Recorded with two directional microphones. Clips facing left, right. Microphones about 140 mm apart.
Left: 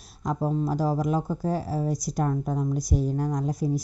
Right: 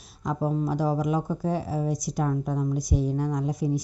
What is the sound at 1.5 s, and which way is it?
Speech, 40° left (ahead or behind).